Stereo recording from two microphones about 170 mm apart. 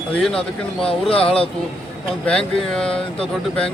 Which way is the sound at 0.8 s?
35° left (ahead or behind).